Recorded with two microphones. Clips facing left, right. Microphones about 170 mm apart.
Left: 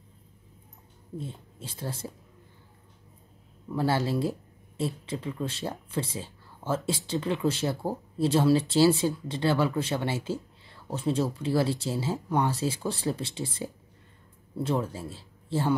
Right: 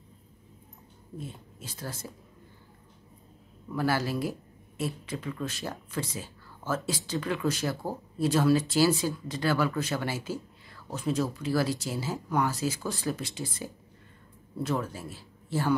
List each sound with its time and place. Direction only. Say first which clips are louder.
1.1 s speech: left 3 dB; 30° left (ahead or behind)
3.7 s speech: left 2 dB; 25° left (ahead or behind)